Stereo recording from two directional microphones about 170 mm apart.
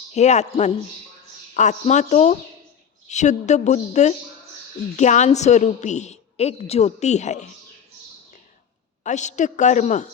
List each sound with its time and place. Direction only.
0.1 s a woman's voice: 40° left (ahead or behind)
9.0 s a woman's voice: 45° left (ahead or behind)